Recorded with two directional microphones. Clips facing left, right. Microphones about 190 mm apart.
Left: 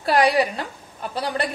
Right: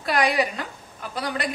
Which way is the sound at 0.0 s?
30° left (ahead or behind).